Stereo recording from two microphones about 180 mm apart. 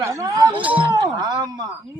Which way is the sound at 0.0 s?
15° right (ahead or behind).